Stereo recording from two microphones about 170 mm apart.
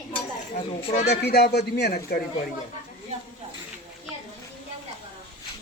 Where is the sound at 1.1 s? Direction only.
75° left (ahead or behind).